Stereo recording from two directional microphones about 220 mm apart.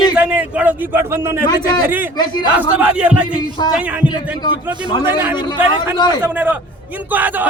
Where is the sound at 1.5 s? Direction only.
20° left (ahead or behind).